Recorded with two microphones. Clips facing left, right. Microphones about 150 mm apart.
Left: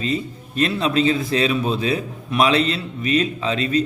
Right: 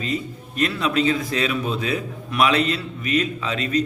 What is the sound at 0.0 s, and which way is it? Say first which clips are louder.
A man's voice: left 3 dB; 30° left (ahead or behind).